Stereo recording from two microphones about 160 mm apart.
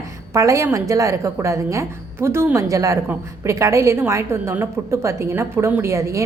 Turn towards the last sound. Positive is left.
turn(degrees=-20)  # may be behind; listen again after turning